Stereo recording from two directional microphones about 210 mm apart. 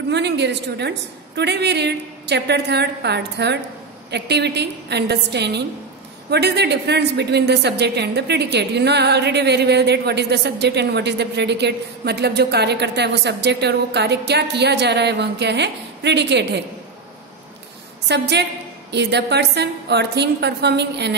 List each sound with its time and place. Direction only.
0.1 s a woman's voice: 55° right (ahead or behind)
18.0 s a woman's voice: 55° right (ahead or behind)